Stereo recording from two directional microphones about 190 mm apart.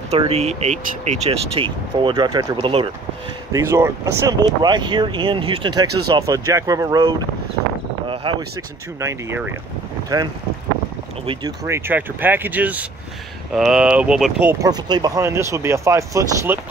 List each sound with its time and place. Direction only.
0.2 s speech: 35° right (ahead or behind)
3.5 s speech: 15° right (ahead or behind)
9.0 s speech: 10° right (ahead or behind)